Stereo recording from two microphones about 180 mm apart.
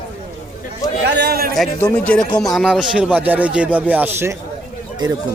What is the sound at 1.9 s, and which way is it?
Speech, 5° left (ahead or behind).